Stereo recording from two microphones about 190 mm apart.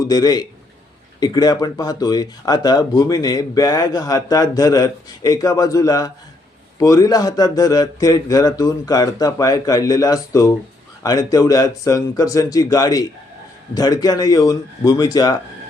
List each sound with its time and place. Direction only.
0.1 s speech: 20° left (ahead or behind)